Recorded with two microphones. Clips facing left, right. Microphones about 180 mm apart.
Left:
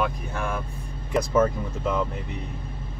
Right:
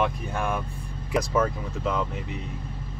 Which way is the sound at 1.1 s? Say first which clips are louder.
Left 3 dB; centre (ahead or behind).